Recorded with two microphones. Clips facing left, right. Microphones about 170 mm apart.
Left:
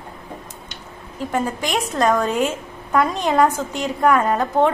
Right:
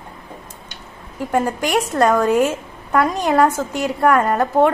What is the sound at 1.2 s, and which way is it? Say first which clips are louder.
A woman's voice: right 3 dB; 10° right (ahead or behind).